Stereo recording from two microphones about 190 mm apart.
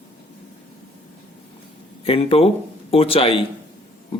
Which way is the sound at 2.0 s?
30° left (ahead or behind).